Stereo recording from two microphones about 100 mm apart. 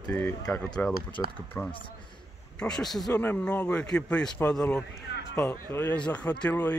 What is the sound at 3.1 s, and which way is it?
Speech, 15° left (ahead or behind).